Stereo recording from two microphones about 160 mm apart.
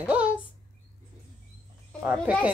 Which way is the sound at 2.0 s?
10° right (ahead or behind).